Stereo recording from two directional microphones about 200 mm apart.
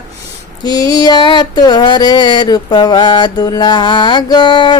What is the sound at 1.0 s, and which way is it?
Mantra, 20° left (ahead or behind).